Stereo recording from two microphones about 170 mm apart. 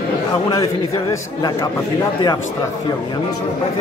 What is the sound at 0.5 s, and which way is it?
A man's voice, 20° left (ahead or behind).